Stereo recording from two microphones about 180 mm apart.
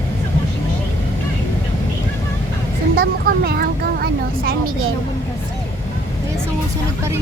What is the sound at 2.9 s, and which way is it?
Speech, 60° right (ahead or behind).